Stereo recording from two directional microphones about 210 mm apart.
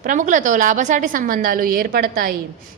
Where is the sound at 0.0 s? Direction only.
40° right (ahead or behind).